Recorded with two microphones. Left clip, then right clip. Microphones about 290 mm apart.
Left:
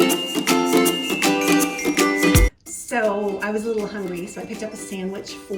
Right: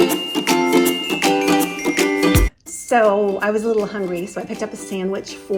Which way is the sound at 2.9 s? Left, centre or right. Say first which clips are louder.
Right 7 dB; centre.